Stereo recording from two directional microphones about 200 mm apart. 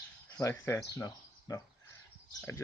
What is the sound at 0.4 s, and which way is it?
Speech, 15° left (ahead or behind).